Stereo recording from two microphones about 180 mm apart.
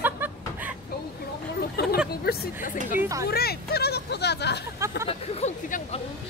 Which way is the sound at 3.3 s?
60° left (ahead or behind).